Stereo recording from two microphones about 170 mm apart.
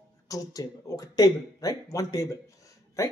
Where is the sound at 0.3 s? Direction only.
20° left (ahead or behind).